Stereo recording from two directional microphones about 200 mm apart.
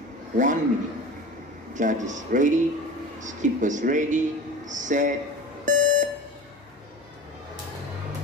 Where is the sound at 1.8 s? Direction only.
40° right (ahead or behind).